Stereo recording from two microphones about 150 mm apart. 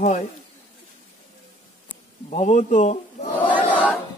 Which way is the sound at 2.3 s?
50° left (ahead or behind).